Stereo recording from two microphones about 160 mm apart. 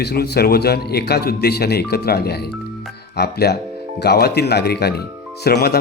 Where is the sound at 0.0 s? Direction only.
90° left.